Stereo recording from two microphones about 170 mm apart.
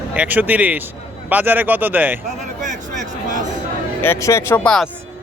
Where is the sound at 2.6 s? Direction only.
45° right (ahead or behind).